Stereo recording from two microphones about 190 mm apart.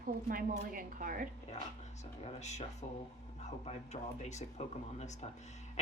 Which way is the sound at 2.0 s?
35° left (ahead or behind).